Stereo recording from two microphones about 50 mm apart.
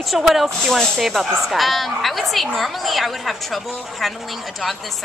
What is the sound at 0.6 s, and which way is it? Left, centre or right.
A woman's voice, centre.